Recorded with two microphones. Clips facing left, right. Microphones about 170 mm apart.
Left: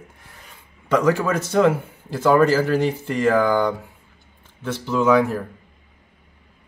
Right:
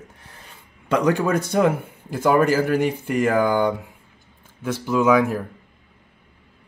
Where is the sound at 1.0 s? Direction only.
15° right (ahead or behind).